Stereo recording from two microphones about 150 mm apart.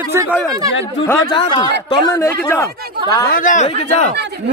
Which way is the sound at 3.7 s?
45° left (ahead or behind).